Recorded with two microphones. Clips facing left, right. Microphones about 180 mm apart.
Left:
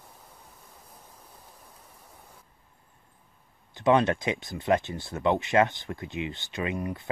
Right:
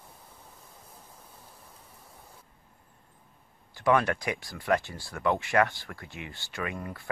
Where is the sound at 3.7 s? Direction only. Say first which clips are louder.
Left 3 dB; 20° left (ahead or behind).